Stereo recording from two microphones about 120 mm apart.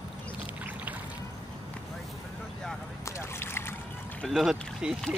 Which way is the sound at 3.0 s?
20° left (ahead or behind).